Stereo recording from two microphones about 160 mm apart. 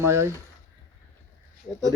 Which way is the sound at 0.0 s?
15° right (ahead or behind).